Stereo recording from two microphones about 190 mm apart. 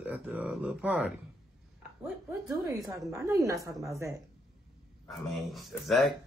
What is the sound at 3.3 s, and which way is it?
Speech, 15° right (ahead or behind).